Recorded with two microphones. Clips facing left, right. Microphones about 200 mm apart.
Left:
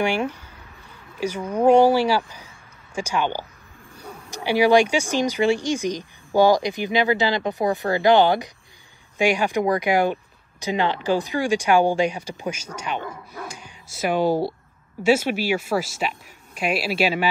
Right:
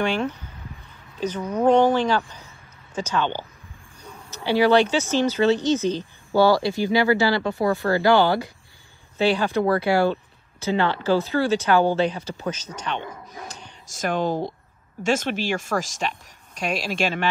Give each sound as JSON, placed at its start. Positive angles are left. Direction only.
{"t": 0.0, "sound": "speech", "side_deg": 10}